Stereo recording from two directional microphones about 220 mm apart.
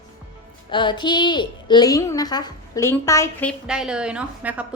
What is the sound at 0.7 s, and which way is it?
A woman's voice, 20° left (ahead or behind).